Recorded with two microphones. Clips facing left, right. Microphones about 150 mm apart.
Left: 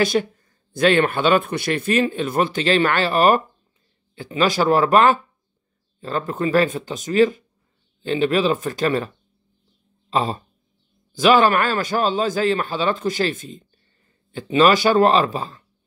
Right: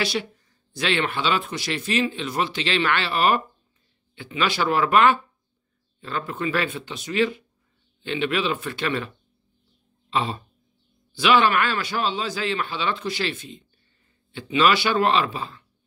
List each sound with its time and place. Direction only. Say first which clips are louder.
0.0 s a man's voice: left 7 dB; 45° left (ahead or behind)
10.0 s a sound: left 4 dB; 40° left (ahead or behind)
11.1 s a man's voice: left 4 dB; 45° left (ahead or behind)